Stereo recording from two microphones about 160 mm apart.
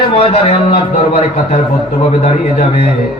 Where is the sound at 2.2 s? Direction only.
50° left (ahead or behind).